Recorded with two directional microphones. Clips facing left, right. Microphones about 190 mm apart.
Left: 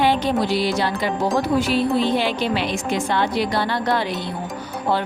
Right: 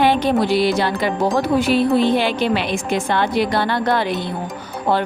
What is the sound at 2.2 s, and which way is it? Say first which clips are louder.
A woman's voice: right 3 dB; 55° right (ahead or behind).